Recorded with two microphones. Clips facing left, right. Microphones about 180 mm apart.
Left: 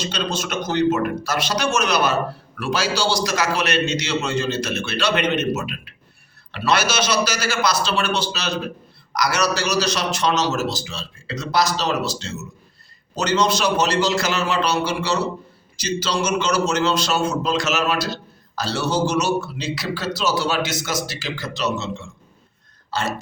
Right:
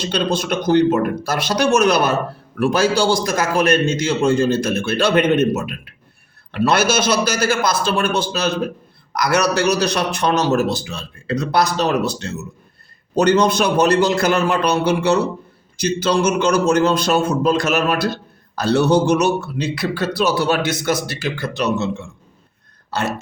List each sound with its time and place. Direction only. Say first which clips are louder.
0.0 s a man's voice: right 5 dB; 55° right (ahead or behind)
0.9 s speech: right 3 dB; 35° right (ahead or behind)
1.2 s a man's voice: right 4 dB; 55° right (ahead or behind)